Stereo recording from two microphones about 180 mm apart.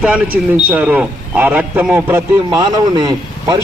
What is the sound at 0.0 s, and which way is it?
A man's voice, 5° right (ahead or behind).